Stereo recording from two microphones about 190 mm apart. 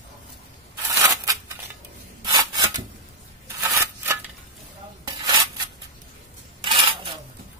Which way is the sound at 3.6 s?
10° right (ahead or behind).